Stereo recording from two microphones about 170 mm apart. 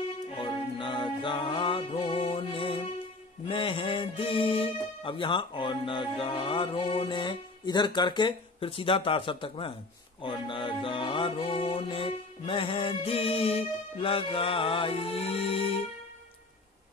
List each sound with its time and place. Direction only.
0.3 s music: 30° left (ahead or behind)
3.4 s speech: 30° left (ahead or behind)
10.2 s music: 30° left (ahead or behind)